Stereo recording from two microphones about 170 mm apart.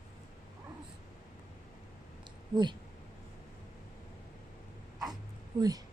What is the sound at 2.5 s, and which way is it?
Speech, 25° right (ahead or behind).